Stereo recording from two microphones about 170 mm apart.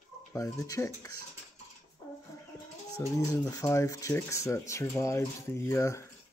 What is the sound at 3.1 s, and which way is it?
Speech, 20° left (ahead or behind).